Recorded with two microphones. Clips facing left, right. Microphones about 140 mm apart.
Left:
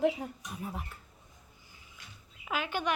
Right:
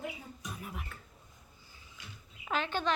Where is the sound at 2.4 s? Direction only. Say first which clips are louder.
Even; 10° left (ahead or behind).